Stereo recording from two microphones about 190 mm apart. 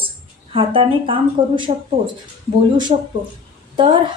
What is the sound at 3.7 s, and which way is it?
Speech, 25° right (ahead or behind).